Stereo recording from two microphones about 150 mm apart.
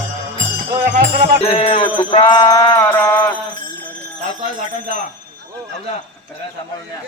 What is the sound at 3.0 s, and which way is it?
Mantra, 15° left (ahead or behind).